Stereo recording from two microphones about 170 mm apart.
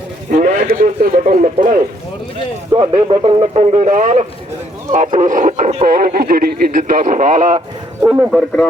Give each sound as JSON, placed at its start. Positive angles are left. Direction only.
{"t": 0.3, "sound": "speech", "side_deg": -50}
{"t": 2.7, "sound": "a man's voice", "side_deg": -30}
{"t": 6.1, "sound": "speech", "side_deg": -60}
{"t": 8.0, "sound": "a man's voice", "side_deg": -10}